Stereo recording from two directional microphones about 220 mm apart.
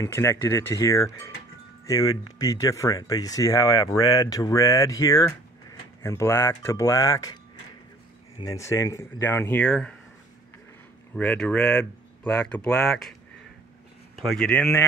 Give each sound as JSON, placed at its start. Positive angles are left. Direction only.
{"t": 0.0, "sound": "speech", "side_deg": 10}
{"t": 8.4, "sound": "speech", "side_deg": 15}
{"t": 11.1, "sound": "speech", "side_deg": 5}
{"t": 14.1, "sound": "speech", "side_deg": 0}